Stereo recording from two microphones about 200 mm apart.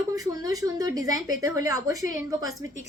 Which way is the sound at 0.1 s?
15° right (ahead or behind).